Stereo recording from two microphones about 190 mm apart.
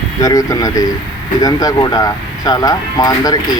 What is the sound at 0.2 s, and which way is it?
Speech, 20° left (ahead or behind).